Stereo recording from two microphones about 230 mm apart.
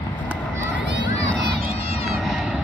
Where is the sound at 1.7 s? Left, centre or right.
Left.